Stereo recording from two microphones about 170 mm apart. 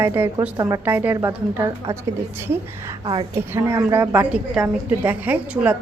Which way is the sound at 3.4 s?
15° right (ahead or behind).